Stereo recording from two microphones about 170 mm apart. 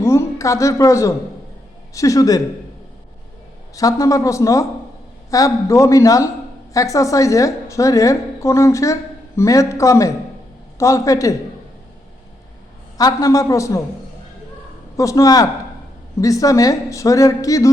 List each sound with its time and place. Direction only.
0.0 s a man's voice: 15° left (ahead or behind)
3.8 s a woman's voice: 20° left (ahead or behind)
13.0 s a woman's voice: 20° left (ahead or behind)
14.9 s a woman's voice: 20° left (ahead or behind)